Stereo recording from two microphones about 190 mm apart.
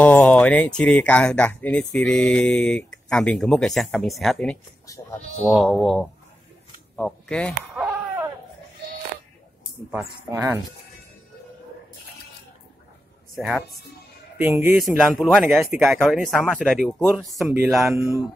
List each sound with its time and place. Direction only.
0.0 s speech: 10° left (ahead or behind)
4.8 s speech: 15° left (ahead or behind)
5.5 s speech: centre (ahead or behind)
10.3 s speech: 10° right (ahead or behind)
13.4 s speech: centre (ahead or behind)
14.4 s speech: 10° right (ahead or behind)
15.0 s speech: centre (ahead or behind)